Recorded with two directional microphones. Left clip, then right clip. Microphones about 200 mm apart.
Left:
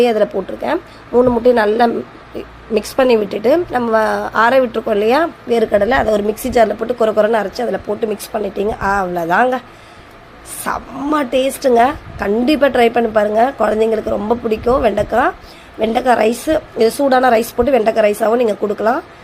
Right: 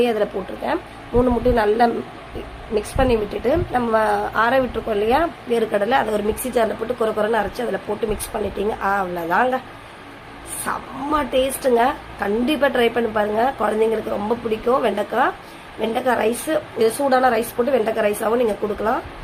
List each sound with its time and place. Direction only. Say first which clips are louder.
0.0 s a woman's voice: left 6 dB; 35° left (ahead or behind)
10.7 s a woman's voice: left 4 dB; 35° left (ahead or behind)